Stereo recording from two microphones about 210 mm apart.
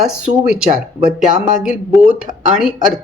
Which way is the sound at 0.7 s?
40° right (ahead or behind).